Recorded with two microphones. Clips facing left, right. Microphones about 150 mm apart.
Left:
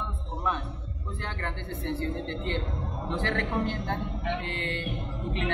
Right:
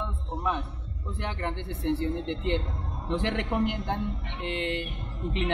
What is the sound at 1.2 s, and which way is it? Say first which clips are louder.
A man's voice: right 4 dB; 15° right (ahead or behind).